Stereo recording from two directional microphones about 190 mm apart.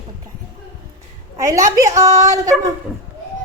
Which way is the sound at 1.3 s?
15° right (ahead or behind).